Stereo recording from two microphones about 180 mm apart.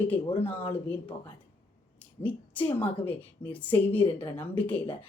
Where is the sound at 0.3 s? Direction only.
30° left (ahead or behind).